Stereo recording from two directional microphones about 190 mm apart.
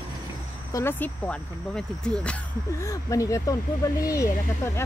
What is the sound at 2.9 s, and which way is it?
Speech, 15° left (ahead or behind).